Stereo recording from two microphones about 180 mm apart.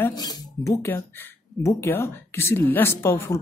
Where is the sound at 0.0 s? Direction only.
20° left (ahead or behind).